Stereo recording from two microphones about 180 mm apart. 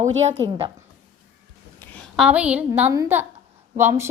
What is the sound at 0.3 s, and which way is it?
Speech, 20° right (ahead or behind).